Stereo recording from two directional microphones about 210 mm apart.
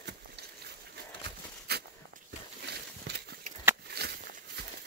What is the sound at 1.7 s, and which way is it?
Walk, 50° right (ahead or behind).